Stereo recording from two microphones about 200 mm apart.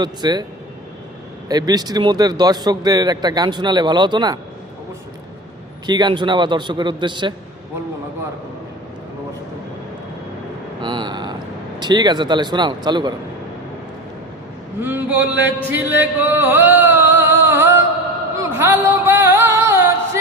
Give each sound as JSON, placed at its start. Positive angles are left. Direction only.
{"t": 0.0, "sound": "speech", "side_deg": -20}
{"t": 1.5, "sound": "speech", "side_deg": -20}
{"t": 5.8, "sound": "speech", "side_deg": -20}
{"t": 10.8, "sound": "vehicle", "side_deg": -20}
{"t": 11.8, "sound": "speech", "side_deg": -20}
{"t": 14.8, "sound": "a sound", "side_deg": -10}
{"t": 18.3, "sound": "music", "side_deg": -10}